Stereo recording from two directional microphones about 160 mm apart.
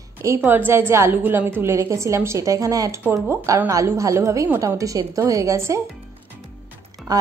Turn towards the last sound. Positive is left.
turn(degrees=-25)  # may be behind; listen again after turning